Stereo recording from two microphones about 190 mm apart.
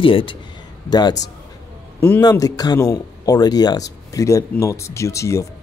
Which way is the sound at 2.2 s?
20° left (ahead or behind).